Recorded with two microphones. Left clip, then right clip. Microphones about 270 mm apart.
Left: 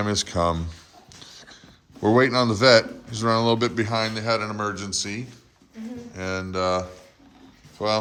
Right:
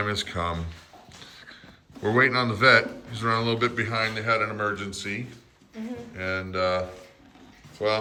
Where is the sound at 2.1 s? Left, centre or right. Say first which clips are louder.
Left 2 dB; centre.